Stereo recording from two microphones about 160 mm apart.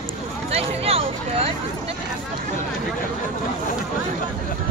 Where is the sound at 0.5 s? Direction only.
40° right (ahead or behind).